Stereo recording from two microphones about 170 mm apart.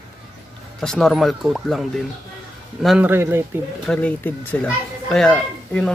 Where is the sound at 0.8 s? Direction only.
5° left (ahead or behind).